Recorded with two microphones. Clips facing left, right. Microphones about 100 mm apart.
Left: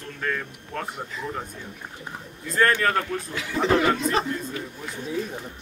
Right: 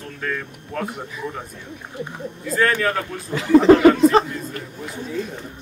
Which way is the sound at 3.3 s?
35° right (ahead or behind).